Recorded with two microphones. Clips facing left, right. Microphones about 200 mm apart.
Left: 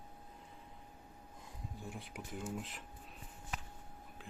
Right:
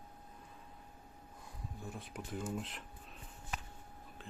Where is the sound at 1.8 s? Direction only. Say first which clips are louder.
Right 2 dB; 15° left (ahead or behind).